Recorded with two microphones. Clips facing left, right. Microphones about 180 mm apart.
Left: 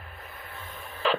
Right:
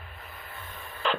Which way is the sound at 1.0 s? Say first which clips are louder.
Left 3 dB; 5° left (ahead or behind).